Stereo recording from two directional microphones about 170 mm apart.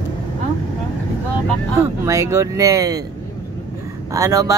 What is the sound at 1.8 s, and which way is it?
Speech, 15° right (ahead or behind).